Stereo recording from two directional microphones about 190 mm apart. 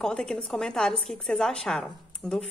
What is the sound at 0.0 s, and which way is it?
A woman's voice, 5° left (ahead or behind).